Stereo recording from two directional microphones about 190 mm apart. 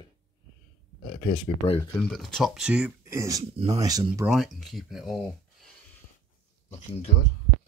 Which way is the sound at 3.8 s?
20° right (ahead or behind).